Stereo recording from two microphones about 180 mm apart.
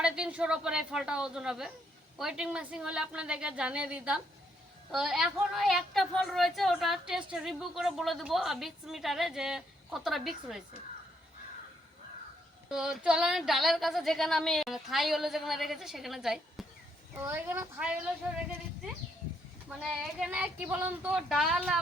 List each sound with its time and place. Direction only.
0.0 s a woman's voice: 5° right (ahead or behind)
12.7 s a woman's voice: 5° right (ahead or behind)
17.2 s a woman's voice: 10° right (ahead or behind)
19.8 s a woman's voice: 5° right (ahead or behind)